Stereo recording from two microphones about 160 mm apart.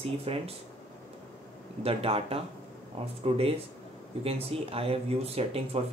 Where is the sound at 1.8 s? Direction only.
35° right (ahead or behind).